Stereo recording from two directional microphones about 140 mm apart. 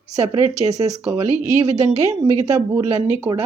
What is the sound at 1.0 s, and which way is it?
A woman's voice, 20° right (ahead or behind).